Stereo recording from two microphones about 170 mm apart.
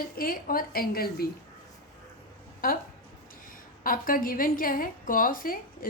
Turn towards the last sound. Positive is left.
turn(degrees=55)  # may be behind; listen again after turning